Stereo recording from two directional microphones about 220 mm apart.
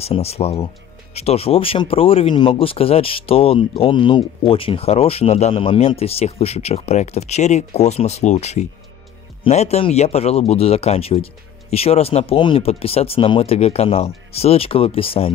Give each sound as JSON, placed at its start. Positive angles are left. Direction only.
{"t": 0.0, "sound": "speech", "side_deg": 25}